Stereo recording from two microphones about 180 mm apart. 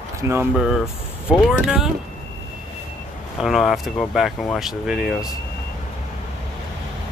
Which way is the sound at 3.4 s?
Centre (ahead or behind).